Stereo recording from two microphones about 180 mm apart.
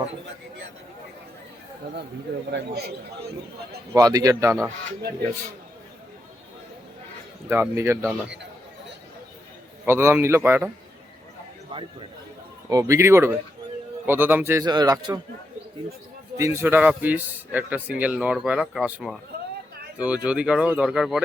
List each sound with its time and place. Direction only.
2.5 s a man's voice: 70° right (ahead or behind)
3.9 s a man's voice: 20° right (ahead or behind)
7.4 s a man's voice: 15° right (ahead or behind)
9.8 s a man's voice: 15° right (ahead or behind)
12.6 s a man's voice: 20° right (ahead or behind)
16.4 s a man's voice: 15° right (ahead or behind)